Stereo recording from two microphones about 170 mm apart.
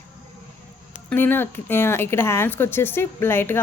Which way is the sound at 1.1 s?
10° left (ahead or behind).